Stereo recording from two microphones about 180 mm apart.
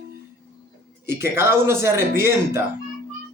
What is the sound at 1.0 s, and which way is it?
Speech, 15° right (ahead or behind).